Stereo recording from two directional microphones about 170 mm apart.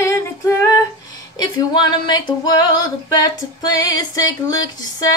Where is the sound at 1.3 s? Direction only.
25° left (ahead or behind).